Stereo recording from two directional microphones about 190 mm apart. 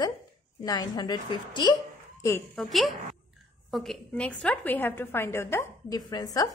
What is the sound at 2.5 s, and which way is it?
A woman's voice, centre (ahead or behind).